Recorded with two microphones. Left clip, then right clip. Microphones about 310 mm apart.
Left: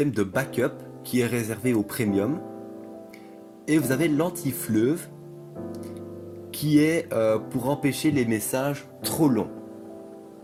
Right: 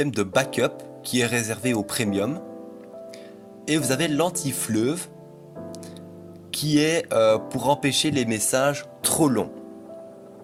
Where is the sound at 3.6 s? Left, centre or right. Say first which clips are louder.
Even; right.